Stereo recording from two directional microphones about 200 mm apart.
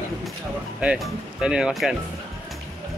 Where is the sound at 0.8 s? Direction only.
5° right (ahead or behind).